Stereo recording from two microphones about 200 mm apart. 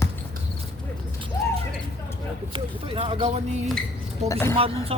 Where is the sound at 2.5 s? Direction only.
25° right (ahead or behind).